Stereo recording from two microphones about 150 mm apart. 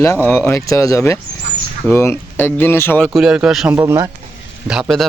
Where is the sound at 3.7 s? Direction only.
20° right (ahead or behind).